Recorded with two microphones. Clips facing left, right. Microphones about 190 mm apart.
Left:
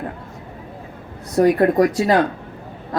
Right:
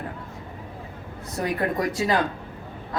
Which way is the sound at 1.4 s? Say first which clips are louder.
Left 11 dB; 45° left (ahead or behind).